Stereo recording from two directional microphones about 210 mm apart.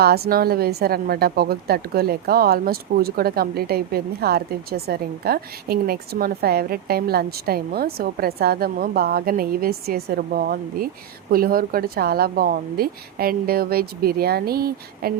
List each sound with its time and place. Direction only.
0.0 s a woman's voice: 50° right (ahead or behind)